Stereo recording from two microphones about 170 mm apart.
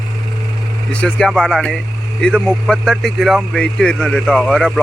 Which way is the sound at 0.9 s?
5° left (ahead or behind).